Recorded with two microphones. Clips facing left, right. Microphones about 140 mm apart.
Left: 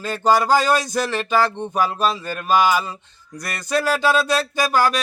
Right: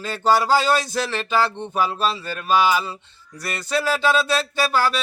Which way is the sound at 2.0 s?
50° left (ahead or behind).